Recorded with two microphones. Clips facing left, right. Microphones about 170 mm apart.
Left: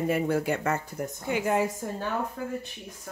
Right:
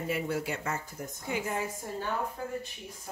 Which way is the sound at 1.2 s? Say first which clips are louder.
Left 7 dB; 75° left (ahead or behind).